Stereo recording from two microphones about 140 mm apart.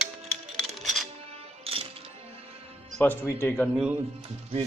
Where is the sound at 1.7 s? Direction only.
45° right (ahead or behind).